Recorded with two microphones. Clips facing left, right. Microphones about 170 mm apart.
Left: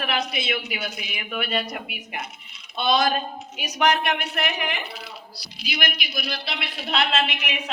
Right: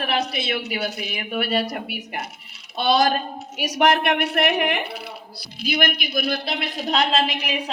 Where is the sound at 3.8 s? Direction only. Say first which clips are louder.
Right 3 dB; 50° right (ahead or behind).